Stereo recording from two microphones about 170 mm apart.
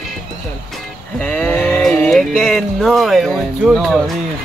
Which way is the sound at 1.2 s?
10° left (ahead or behind).